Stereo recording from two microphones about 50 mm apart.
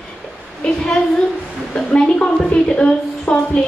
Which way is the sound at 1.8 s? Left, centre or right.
Left.